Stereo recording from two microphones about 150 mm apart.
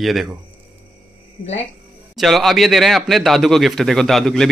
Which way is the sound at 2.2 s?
Centre (ahead or behind).